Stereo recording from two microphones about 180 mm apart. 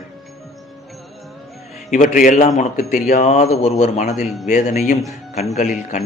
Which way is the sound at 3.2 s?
35° left (ahead or behind).